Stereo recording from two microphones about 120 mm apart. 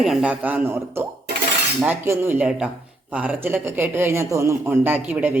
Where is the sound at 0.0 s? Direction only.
5° right (ahead or behind).